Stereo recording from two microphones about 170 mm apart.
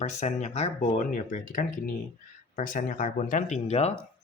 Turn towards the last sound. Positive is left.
turn(degrees=40)  # may be behind; listen again after turning